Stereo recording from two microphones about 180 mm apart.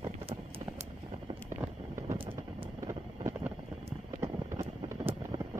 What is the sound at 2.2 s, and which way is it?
Vehicle, 30° right (ahead or behind).